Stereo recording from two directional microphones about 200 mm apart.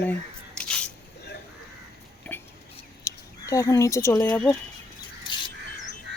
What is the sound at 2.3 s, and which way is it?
Whispering, 10° left (ahead or behind).